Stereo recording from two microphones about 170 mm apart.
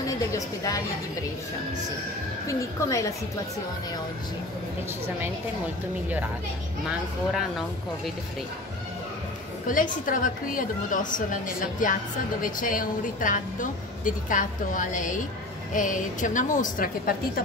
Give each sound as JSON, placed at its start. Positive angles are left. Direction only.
{"t": 0.0, "sound": "a woman's voice", "side_deg": 20}
{"t": 2.4, "sound": "a woman's voice", "side_deg": 20}
{"t": 6.9, "sound": "speech", "side_deg": 0}
{"t": 9.7, "sound": "a woman's voice", "side_deg": 55}